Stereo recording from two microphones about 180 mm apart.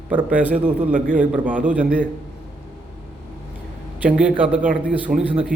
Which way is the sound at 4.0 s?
5° right (ahead or behind).